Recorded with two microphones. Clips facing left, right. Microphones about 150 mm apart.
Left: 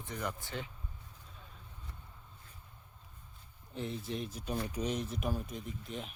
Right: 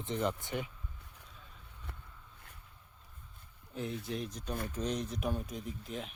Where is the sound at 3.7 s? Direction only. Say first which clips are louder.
Right 1 dB; centre (ahead or behind).